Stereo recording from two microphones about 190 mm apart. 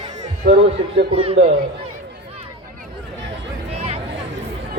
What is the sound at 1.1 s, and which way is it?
Speech, 30° right (ahead or behind).